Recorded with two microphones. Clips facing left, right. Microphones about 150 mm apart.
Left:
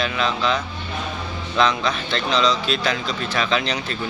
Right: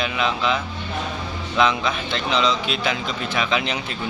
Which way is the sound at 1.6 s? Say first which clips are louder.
Even; 15° right (ahead or behind).